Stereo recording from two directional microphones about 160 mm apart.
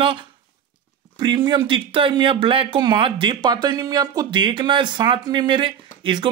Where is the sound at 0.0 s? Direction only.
30° right (ahead or behind).